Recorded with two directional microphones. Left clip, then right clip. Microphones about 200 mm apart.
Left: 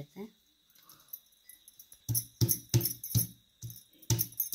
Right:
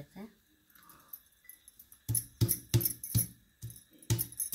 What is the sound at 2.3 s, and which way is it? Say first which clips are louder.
Music: left 2 dB; 30° right (ahead or behind).